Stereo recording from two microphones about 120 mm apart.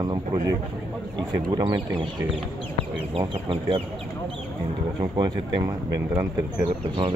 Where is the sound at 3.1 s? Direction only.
45° right (ahead or behind).